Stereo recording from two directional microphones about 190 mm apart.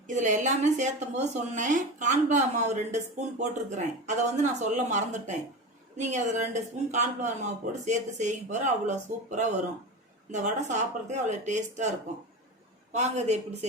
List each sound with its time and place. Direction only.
0.1 s a woman's voice: 40° right (ahead or behind)
12.9 s a woman's voice: 35° right (ahead or behind)